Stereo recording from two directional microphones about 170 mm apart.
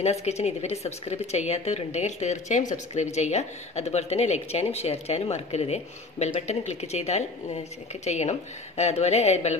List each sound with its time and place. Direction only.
0.0 s speech: 40° left (ahead or behind)